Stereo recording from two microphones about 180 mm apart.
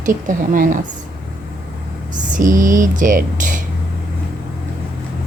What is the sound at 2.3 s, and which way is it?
Speech, 45° right (ahead or behind).